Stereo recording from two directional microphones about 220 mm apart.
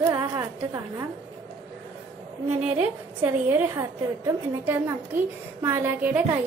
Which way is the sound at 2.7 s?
10° right (ahead or behind).